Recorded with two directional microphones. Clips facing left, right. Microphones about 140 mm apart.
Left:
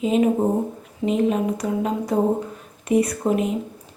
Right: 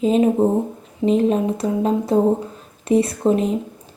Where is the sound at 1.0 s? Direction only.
35° right (ahead or behind).